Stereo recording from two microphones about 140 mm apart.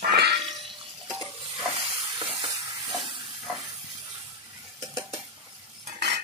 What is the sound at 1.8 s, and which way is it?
Stir, 40° right (ahead or behind).